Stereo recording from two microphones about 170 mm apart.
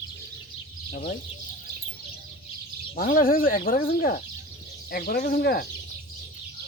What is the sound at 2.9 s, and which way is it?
Speech, 60° left (ahead or behind).